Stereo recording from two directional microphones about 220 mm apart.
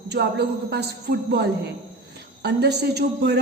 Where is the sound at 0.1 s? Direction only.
50° right (ahead or behind).